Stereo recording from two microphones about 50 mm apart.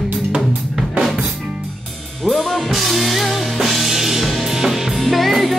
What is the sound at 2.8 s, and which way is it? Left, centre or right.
Music, centre.